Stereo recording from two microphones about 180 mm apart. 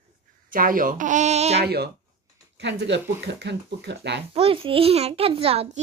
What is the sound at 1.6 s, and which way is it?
Speech, 65° right (ahead or behind).